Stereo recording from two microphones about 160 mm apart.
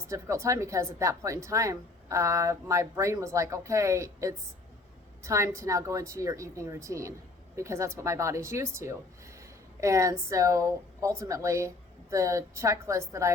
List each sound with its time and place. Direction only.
0.1 s a woman's voice: 20° right (ahead or behind)